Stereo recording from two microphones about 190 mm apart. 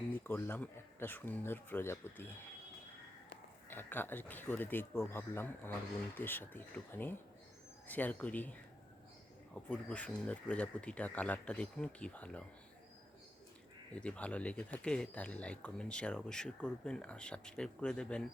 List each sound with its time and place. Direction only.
0.1 s speech: 10° left (ahead or behind)
3.7 s speech: 10° left (ahead or behind)
9.6 s speech: 5° left (ahead or behind)
13.9 s speech: 5° left (ahead or behind)